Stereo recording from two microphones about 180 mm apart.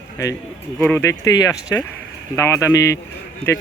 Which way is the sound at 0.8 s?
10° left (ahead or behind).